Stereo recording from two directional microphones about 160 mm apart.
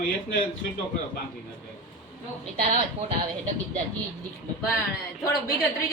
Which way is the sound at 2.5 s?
35° right (ahead or behind).